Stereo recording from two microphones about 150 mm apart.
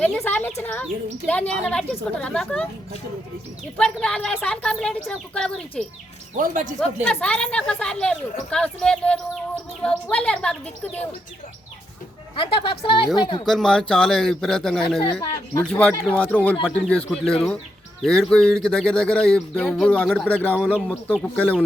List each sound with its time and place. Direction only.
0.2 s speech: 10° left (ahead or behind)
3.8 s speech: 5° left (ahead or behind)
6.3 s speech: 60° right (ahead or behind)
6.7 s speech: 5° left (ahead or behind)
12.4 s speech: 35° left (ahead or behind)
13.5 s speech: 5° left (ahead or behind)
20.6 s speech: 5° right (ahead or behind)
21.2 s speech: 10° left (ahead or behind)